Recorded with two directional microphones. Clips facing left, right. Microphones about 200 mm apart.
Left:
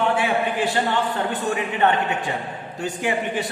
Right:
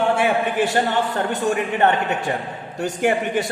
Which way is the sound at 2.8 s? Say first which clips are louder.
Right 4 dB; 45° right (ahead or behind).